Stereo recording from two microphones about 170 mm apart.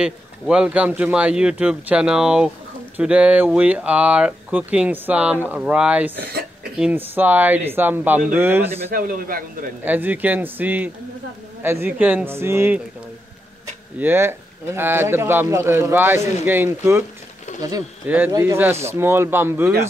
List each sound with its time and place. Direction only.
0.0 s speech: 5° right (ahead or behind)
8.9 s a man's voice: 55° right (ahead or behind)
9.8 s speech: 10° right (ahead or behind)
13.9 s speech: 15° right (ahead or behind)
17.5 s a sound: 45° left (ahead or behind)
18.0 s speech: 10° right (ahead or behind)